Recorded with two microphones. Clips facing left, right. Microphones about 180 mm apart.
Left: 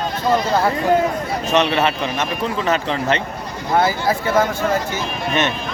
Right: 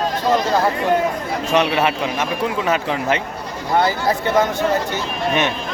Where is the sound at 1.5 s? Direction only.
10° right (ahead or behind).